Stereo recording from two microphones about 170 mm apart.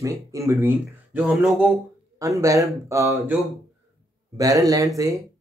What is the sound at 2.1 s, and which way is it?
Speech, 20° right (ahead or behind).